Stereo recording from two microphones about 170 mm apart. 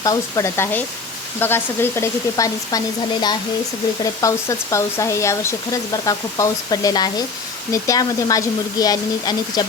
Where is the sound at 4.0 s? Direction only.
20° left (ahead or behind).